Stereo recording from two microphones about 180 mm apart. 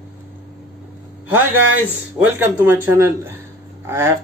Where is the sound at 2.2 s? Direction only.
10° right (ahead or behind).